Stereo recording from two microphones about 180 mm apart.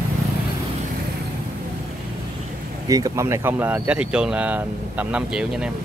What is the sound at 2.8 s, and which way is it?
Speech, 20° right (ahead or behind).